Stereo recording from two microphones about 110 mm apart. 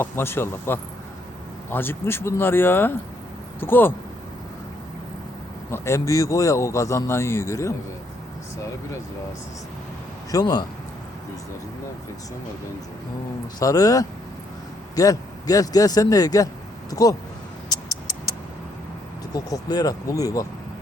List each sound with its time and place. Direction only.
0.0 s a man's voice: 20° left (ahead or behind)
5.7 s a man's voice: 25° left (ahead or behind)
10.3 s a man's voice: 40° left (ahead or behind)
13.6 s a man's voice: 35° left (ahead or behind)
17.7 s a sound: 35° left (ahead or behind)
19.3 s a man's voice: 35° left (ahead or behind)